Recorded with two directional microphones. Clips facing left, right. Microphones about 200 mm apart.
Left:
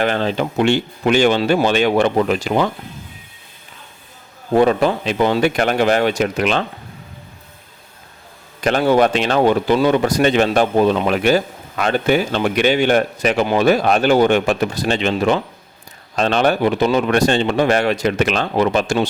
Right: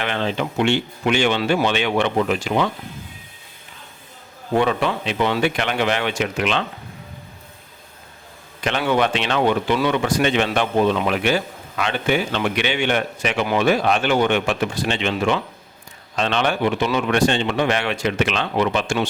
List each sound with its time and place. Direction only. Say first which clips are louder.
0.0 s speech: left 5 dB; 40° left (ahead or behind)
4.5 s speech: left 5 dB; 40° left (ahead or behind)
8.6 s speech: left 6 dB; 40° left (ahead or behind)